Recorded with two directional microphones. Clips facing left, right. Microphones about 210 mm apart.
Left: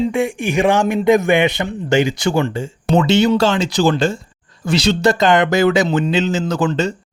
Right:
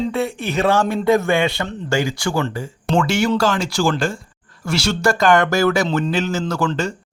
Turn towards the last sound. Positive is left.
turn(degrees=20)  # may be behind; listen again after turning